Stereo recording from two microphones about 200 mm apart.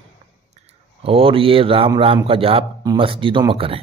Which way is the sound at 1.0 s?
30° right (ahead or behind).